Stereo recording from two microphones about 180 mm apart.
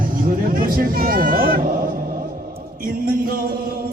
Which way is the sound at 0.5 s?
50° right (ahead or behind).